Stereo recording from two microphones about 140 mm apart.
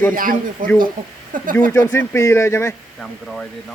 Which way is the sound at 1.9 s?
20° left (ahead or behind).